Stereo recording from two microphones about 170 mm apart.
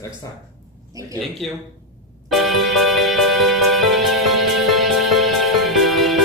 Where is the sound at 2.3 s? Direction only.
Centre (ahead or behind).